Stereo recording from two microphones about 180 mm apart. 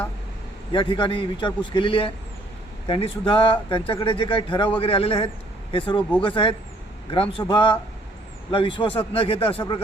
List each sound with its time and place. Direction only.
0.7 s a man's voice: 30° left (ahead or behind)